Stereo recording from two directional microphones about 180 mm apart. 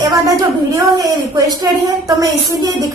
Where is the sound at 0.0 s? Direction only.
20° right (ahead or behind).